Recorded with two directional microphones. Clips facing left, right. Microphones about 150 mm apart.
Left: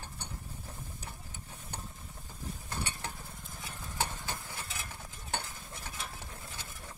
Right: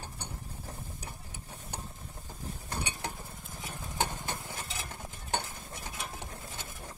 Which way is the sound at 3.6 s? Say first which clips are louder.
Right 3 dB; 15° right (ahead or behind).